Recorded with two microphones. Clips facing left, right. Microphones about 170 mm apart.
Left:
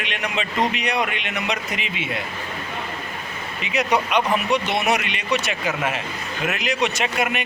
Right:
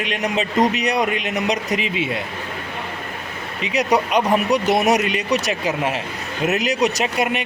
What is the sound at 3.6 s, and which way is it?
A man's voice, 40° right (ahead or behind).